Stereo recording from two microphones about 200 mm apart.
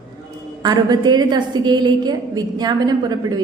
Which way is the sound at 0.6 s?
20° right (ahead or behind).